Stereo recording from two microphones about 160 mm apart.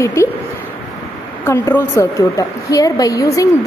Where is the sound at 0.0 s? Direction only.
15° left (ahead or behind).